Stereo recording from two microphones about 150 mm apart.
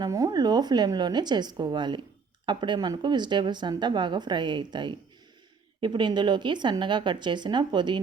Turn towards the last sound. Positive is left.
turn(degrees=-30)  # may be behind; listen again after turning